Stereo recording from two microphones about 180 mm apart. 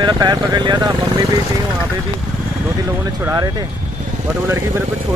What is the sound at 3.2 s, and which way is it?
Speech, 20° right (ahead or behind).